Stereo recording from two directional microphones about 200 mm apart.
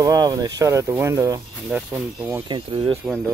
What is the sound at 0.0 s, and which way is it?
Speech, 20° right (ahead or behind).